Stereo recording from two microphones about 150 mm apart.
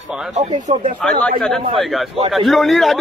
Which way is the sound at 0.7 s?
50° right (ahead or behind).